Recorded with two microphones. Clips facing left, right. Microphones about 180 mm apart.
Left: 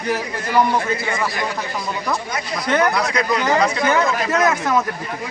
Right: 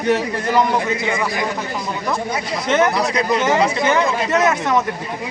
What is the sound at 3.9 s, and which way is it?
Speech, centre (ahead or behind).